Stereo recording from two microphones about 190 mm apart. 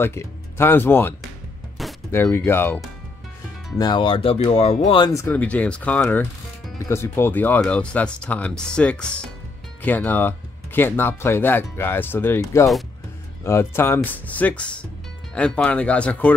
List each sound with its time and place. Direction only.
0.0 s speech: 10° left (ahead or behind)
3.7 s speech: 20° left (ahead or behind)
5.2 s speech: 10° left (ahead or behind)